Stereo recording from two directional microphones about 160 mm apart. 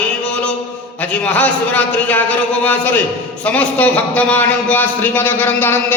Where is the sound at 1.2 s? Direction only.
10° left (ahead or behind).